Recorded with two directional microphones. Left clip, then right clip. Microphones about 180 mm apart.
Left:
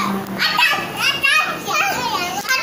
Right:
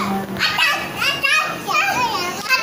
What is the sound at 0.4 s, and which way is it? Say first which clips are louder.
Children playing: left 2 dB; 5° right (ahead or behind).